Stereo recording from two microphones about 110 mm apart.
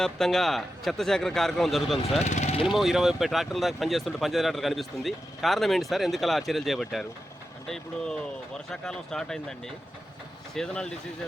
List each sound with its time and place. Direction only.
0.0 s speech: 5° left (ahead or behind)
2.2 s speech: 90° left
2.6 s speech: 5° right (ahead or behind)